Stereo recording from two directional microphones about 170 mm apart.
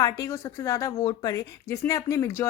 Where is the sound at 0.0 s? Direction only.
20° left (ahead or behind).